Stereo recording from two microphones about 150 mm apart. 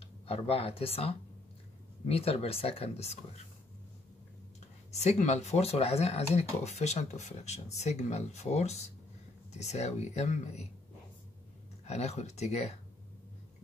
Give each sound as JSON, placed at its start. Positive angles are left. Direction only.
{"t": 0.0, "sound": "speech", "side_deg": 40}
{"t": 4.9, "sound": "speech", "side_deg": 50}
{"t": 11.8, "sound": "speech", "side_deg": 45}